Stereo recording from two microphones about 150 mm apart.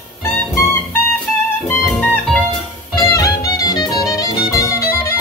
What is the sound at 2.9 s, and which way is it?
Music, 25° left (ahead or behind).